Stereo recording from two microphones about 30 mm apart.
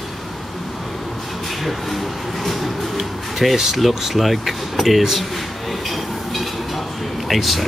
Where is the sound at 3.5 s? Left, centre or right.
Centre.